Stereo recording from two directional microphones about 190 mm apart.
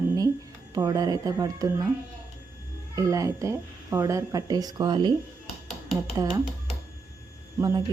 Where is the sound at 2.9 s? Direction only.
15° right (ahead or behind).